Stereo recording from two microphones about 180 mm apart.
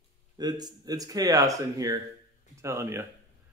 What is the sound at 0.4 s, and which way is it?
Speech, 20° right (ahead or behind).